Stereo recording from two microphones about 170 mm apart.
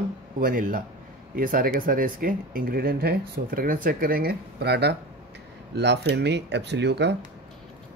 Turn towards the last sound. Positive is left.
turn(degrees=-90)